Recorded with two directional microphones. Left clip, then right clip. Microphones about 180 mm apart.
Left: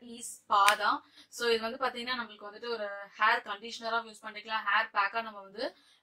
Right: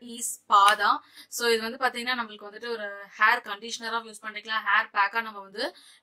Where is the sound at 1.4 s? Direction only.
25° right (ahead or behind).